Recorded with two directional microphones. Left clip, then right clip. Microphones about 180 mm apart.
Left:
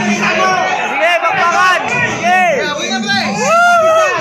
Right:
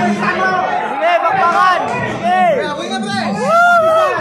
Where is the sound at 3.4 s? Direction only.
5° left (ahead or behind).